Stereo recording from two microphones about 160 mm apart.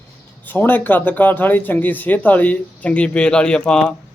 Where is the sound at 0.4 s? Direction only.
10° left (ahead or behind).